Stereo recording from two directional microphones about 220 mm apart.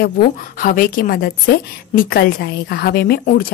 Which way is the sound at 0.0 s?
40° left (ahead or behind).